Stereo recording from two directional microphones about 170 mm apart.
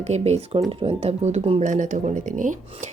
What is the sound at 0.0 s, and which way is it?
Speech, 40° right (ahead or behind).